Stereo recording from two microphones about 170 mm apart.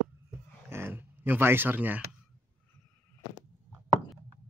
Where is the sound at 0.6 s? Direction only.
15° right (ahead or behind).